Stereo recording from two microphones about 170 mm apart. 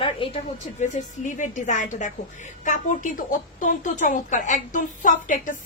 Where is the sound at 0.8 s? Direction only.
45° left (ahead or behind).